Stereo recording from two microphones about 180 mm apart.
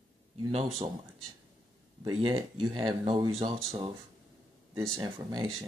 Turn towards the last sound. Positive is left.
turn(degrees=-25)  # may be behind; listen again after turning